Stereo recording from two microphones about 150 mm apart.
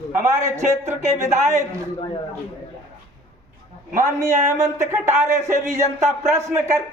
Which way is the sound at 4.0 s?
20° right (ahead or behind).